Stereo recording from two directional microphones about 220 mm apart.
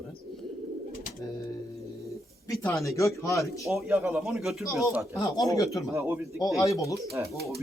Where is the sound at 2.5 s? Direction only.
15° left (ahead or behind).